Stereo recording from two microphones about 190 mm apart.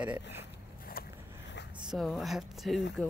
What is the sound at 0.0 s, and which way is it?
Speech, 10° right (ahead or behind).